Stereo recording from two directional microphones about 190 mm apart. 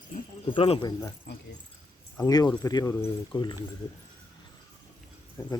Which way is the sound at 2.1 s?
20° left (ahead or behind).